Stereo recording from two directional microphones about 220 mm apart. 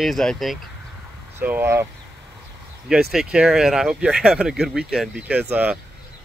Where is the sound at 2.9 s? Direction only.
Centre (ahead or behind).